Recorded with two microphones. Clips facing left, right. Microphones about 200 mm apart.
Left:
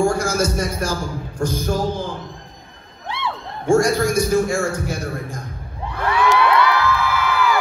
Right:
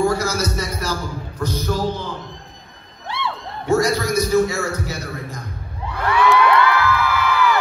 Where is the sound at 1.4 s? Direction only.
50° left (ahead or behind).